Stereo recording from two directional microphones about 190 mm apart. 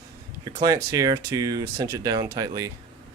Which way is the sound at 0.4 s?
20° right (ahead or behind).